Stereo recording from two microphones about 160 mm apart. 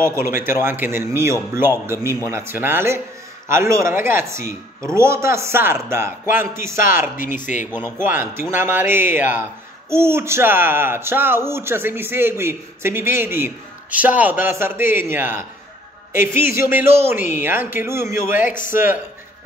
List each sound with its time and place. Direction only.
0.0 s speech: 15° right (ahead or behind)
7.2 s speech: 55° left (ahead or behind)
8.0 s speech: 15° right (ahead or behind)
18.5 s speech: 55° left (ahead or behind)